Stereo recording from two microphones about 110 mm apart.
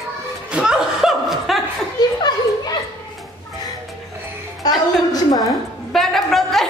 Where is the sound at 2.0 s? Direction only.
40° left (ahead or behind).